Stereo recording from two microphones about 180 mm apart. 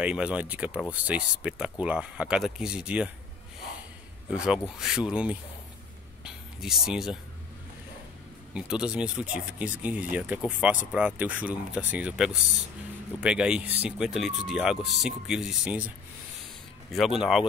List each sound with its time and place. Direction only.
0.0 s speech: 5° right (ahead or behind)
4.4 s speech: 5° right (ahead or behind)
8.5 s speech: 5° right (ahead or behind)
16.9 s speech: centre (ahead or behind)